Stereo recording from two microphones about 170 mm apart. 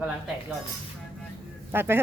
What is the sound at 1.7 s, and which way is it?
Speech, 15° right (ahead or behind).